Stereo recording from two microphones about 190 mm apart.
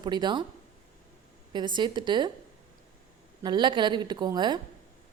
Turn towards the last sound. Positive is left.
turn(degrees=-25)  # may be behind; listen again after turning